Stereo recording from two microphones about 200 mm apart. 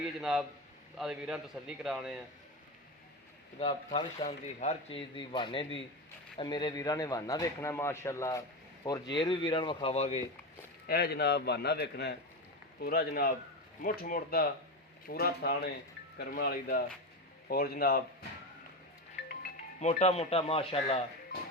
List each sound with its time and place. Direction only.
0.2 s a man's voice: centre (ahead or behind)
3.6 s speech: 25° left (ahead or behind)
10.8 s a man's voice: 50° left (ahead or behind)
19.8 s speech: 35° left (ahead or behind)